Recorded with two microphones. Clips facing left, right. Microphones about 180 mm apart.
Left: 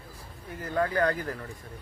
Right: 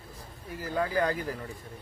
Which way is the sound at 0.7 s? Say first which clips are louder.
Left 2 dB; 10° right (ahead or behind).